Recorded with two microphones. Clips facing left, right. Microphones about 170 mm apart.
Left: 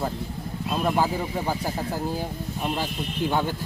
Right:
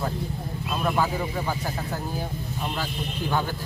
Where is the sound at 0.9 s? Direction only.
30° left (ahead or behind).